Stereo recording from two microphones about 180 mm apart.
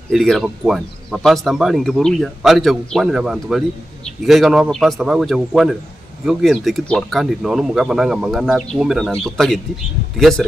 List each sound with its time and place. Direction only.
0.1 s speech: centre (ahead or behind)